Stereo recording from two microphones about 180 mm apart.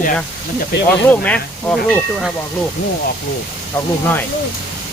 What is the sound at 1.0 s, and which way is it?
Speech, 10° left (ahead or behind).